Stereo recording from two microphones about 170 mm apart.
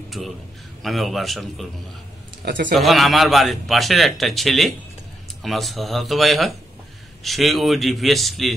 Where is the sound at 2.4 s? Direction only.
55° right (ahead or behind).